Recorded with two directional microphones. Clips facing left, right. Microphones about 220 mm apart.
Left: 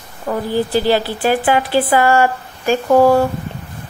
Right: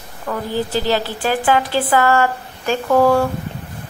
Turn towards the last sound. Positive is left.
turn(degrees=25)  # may be behind; listen again after turning